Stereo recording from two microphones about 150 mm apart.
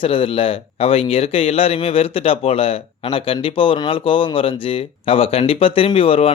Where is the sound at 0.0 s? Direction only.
35° left (ahead or behind).